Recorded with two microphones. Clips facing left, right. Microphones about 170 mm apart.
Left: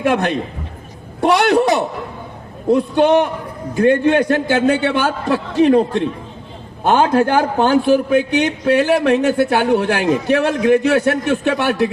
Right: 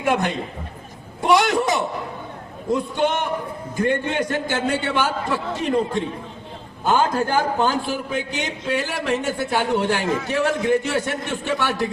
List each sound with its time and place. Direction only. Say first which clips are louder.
0.0 s a man's voice: left 5 dB; 65° left (ahead or behind)